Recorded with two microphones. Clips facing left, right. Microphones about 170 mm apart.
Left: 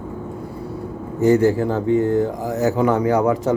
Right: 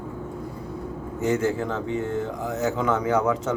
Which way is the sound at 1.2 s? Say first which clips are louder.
Left 8 dB; 35° left (ahead or behind).